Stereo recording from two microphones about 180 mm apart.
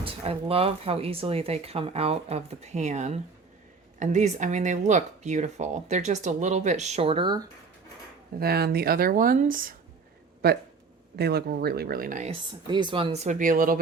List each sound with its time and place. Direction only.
0.0 s speech: 30° right (ahead or behind)
8.4 s speech: 60° right (ahead or behind)
10.4 s speech: 60° right (ahead or behind)
12.3 s speech: 25° right (ahead or behind); by 13.7 s 50° right (ahead or behind)